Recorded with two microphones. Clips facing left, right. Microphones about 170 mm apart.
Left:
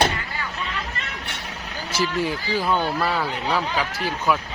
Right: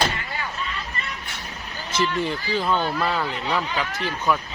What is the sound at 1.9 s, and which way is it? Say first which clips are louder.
Speech: even; 10° left (ahead or behind).